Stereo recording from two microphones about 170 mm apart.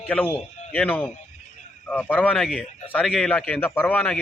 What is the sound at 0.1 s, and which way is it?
A man's voice, 10° left (ahead or behind).